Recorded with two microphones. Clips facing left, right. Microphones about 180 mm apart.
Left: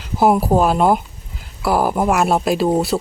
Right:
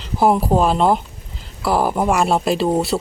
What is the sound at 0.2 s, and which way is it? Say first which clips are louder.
Speech: left 1 dB; 5° left (ahead or behind).